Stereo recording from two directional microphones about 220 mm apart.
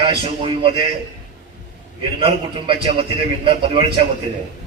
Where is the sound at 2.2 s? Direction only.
25° right (ahead or behind).